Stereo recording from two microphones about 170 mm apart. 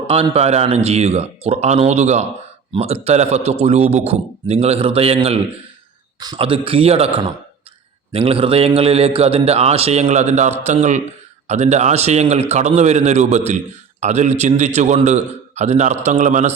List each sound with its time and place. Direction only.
0.1 s a man's voice: 35° right (ahead or behind)